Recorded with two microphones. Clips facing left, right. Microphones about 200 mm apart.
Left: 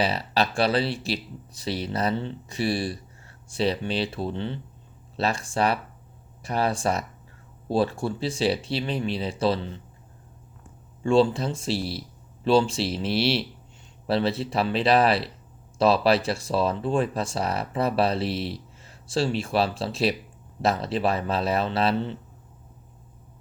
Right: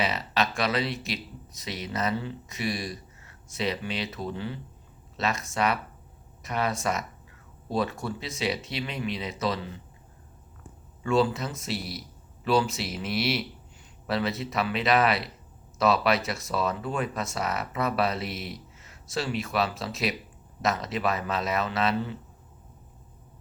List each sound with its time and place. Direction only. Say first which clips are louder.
0.0 s speech: left 3 dB; 30° left (ahead or behind)
11.0 s speech: left 4 dB; 30° left (ahead or behind)